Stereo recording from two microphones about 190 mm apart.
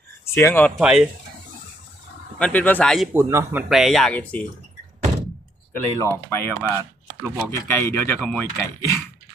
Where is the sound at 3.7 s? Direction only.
Centre (ahead or behind).